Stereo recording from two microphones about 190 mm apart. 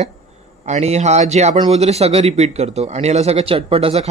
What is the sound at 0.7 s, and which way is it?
Speech, 35° right (ahead or behind).